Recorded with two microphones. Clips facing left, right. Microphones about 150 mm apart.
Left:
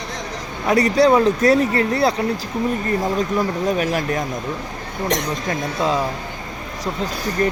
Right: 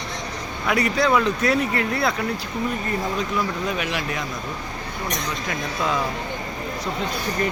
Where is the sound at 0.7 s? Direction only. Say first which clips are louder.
Left 6 dB; 40° left (ahead or behind).